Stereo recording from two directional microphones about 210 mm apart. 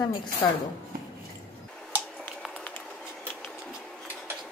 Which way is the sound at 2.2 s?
5° left (ahead or behind).